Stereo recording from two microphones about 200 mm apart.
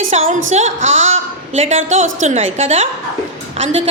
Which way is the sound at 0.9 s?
35° right (ahead or behind).